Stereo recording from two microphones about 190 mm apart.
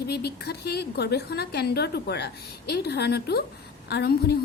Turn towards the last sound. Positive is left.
turn(degrees=55)  # may be behind; listen again after turning